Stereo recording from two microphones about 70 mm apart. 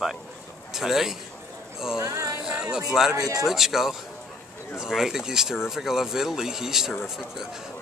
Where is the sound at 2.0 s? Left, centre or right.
Right.